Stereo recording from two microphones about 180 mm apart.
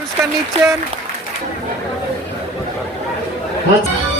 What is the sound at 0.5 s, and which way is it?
Speech, 35° right (ahead or behind).